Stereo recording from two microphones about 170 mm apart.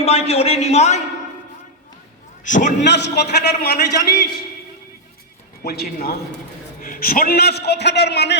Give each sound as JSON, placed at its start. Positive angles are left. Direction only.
{"t": 0.0, "sound": "a man's voice", "side_deg": 35}
{"t": 2.4, "sound": "a man's voice", "side_deg": 45}
{"t": 2.8, "sound": "a man's voice", "side_deg": 90}
{"t": 3.9, "sound": "a man's voice", "side_deg": 25}
{"t": 5.6, "sound": "a man's voice", "side_deg": 70}